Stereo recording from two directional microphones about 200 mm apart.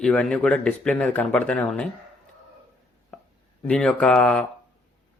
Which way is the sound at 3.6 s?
5° left (ahead or behind).